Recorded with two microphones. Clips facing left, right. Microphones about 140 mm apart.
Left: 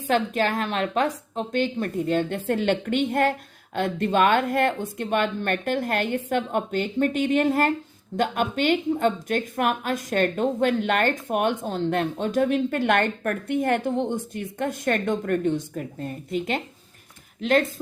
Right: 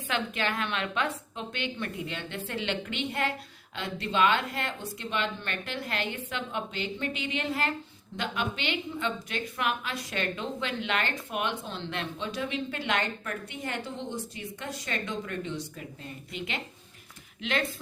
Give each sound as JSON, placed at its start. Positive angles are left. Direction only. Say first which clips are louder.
{"t": 0.1, "sound": "a woman's voice", "louder": "left 8 dB", "side_deg": 40}